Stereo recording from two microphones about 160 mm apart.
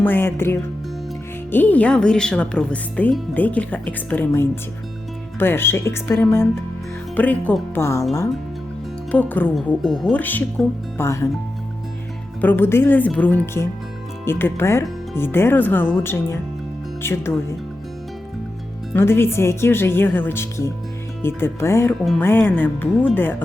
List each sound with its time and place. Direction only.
0.0 s speech: 15° left (ahead or behind)
9.1 s speech: 10° left (ahead or behind)
10.1 s speech: 10° left (ahead or behind)
12.4 s speech: 10° left (ahead or behind)
18.9 s speech: 15° left (ahead or behind)